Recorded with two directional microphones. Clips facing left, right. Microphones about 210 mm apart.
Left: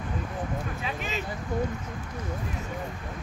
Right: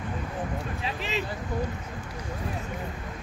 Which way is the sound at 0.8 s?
35° right (ahead or behind).